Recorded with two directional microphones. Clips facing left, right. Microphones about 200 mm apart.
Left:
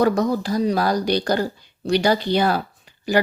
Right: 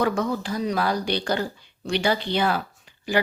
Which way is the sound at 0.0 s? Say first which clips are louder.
Left 5 dB; 40° left (ahead or behind).